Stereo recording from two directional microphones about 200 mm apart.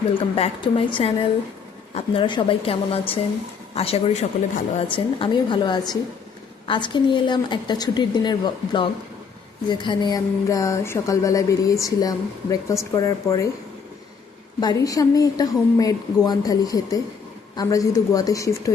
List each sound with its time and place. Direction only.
0.1 s speech: 30° left (ahead or behind)
14.6 s speech: 20° left (ahead or behind)